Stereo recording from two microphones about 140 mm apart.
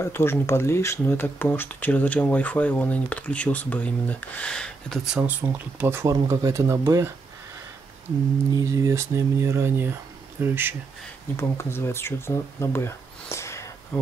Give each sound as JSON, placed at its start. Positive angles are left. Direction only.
{"t": 0.0, "sound": "speech", "side_deg": 15}
{"t": 8.5, "sound": "speech", "side_deg": -25}
{"t": 11.3, "sound": "speech", "side_deg": 20}